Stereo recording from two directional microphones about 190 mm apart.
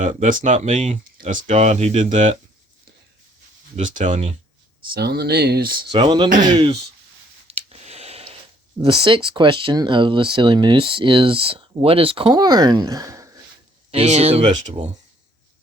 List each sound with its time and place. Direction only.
0.0 s speech: 45° right (ahead or behind)
3.8 s speech: 40° right (ahead or behind)
4.9 s speech: 55° right (ahead or behind)
5.9 s speech: 25° right (ahead or behind)
7.4 s a sound: 30° right (ahead or behind)
8.8 s speech: 25° right (ahead or behind)
13.9 s speech: 35° right (ahead or behind)